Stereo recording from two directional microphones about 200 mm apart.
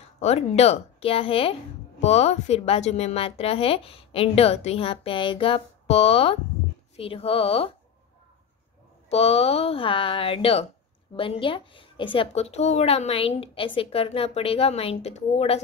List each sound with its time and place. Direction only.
0.2 s a woman's voice: 30° left (ahead or behind)
9.1 s a woman's voice: 30° left (ahead or behind)